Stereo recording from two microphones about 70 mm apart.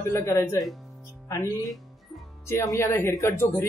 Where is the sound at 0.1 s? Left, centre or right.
Left.